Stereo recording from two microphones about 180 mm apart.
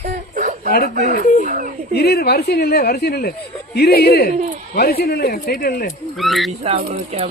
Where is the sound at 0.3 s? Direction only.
45° right (ahead or behind).